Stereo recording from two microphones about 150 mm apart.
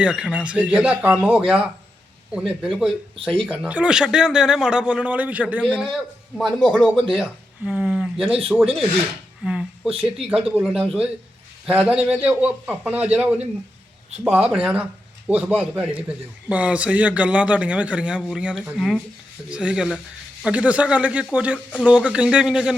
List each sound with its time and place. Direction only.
0.0 s a man's voice: 5° right (ahead or behind)
9.4 s a sound: 5° right (ahead or behind)
9.9 s speech: 40° right (ahead or behind)
10.3 s a man's voice: 5° right (ahead or behind)
14.5 s a man's voice: 5° right (ahead or behind)